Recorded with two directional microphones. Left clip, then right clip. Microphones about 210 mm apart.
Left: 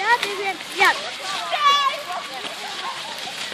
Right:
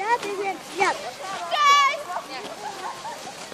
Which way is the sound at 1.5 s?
20° right (ahead or behind).